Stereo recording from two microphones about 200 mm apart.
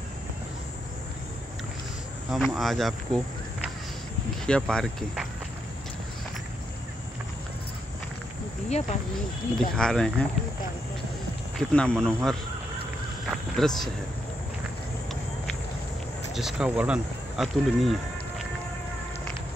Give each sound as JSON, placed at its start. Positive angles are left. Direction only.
{"t": 2.3, "sound": "speech", "side_deg": 0}
{"t": 4.5, "sound": "speech", "side_deg": 5}
{"t": 8.6, "sound": "speech", "side_deg": 35}
{"t": 9.8, "sound": "speech", "side_deg": 5}
{"t": 11.5, "sound": "speech", "side_deg": 5}
{"t": 16.3, "sound": "speech", "side_deg": -5}